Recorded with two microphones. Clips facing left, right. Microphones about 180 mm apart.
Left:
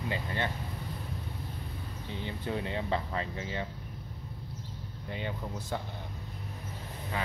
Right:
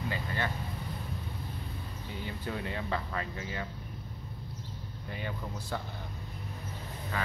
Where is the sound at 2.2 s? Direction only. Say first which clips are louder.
Left 2 dB; 25° left (ahead or behind).